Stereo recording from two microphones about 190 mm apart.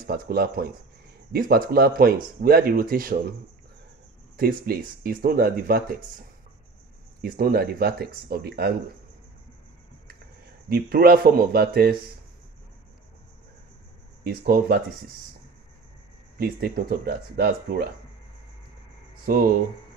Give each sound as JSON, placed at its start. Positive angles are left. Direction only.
{"t": 0.0, "sound": "speech", "side_deg": -55}
{"t": 4.4, "sound": "speech", "side_deg": -50}
{"t": 7.2, "sound": "speech", "side_deg": -50}
{"t": 10.7, "sound": "speech", "side_deg": -55}
{"t": 14.2, "sound": "speech", "side_deg": -50}
{"t": 16.3, "sound": "speech", "side_deg": -55}
{"t": 19.2, "sound": "speech", "side_deg": -50}